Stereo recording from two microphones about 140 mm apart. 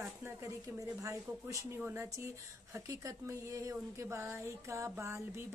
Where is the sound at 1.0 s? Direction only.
25° right (ahead or behind).